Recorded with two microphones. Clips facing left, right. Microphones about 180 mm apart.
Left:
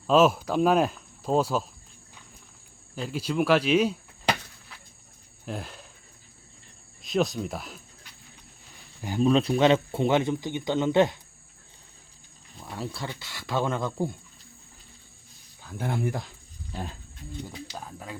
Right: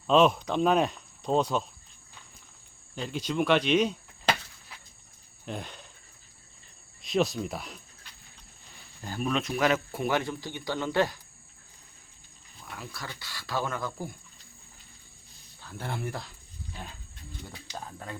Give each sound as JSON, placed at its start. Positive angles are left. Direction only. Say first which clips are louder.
{"t": 0.1, "sound": "speech", "louder": "left 2 dB", "side_deg": 5}
{"t": 2.9, "sound": "speech", "louder": "left 2 dB", "side_deg": 5}
{"t": 5.5, "sound": "speech", "louder": "left 2 dB", "side_deg": 5}
{"t": 7.0, "sound": "speech", "louder": "left 1 dB", "side_deg": 0}
{"t": 9.0, "sound": "speech", "louder": "left 7 dB", "side_deg": 15}
{"t": 9.2, "sound": "speech", "louder": "left 7 dB", "side_deg": 30}
{"t": 12.5, "sound": "speech", "louder": "left 7 dB", "side_deg": 30}
{"t": 15.6, "sound": "speech", "louder": "left 6 dB", "side_deg": 15}
{"t": 17.5, "sound": "speech", "louder": "left 2 dB", "side_deg": 10}